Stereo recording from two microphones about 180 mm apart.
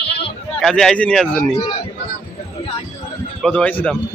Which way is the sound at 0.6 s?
5° left (ahead or behind).